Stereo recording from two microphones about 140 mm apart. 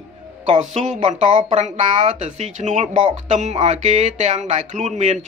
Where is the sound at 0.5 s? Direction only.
55° right (ahead or behind).